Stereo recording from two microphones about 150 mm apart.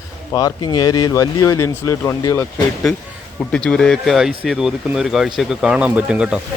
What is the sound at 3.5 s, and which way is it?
Speech, 5° left (ahead or behind).